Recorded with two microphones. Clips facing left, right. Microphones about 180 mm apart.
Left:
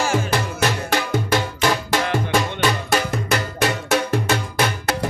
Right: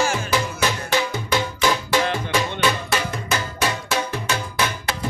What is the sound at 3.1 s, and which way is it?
Cowbell, 65° left (ahead or behind).